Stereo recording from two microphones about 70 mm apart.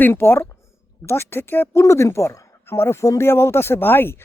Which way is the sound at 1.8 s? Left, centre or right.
Left.